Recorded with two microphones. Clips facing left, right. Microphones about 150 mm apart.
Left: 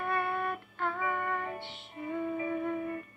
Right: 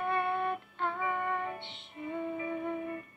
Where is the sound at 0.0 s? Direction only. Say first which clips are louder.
Right 1 dB; 20° right (ahead or behind).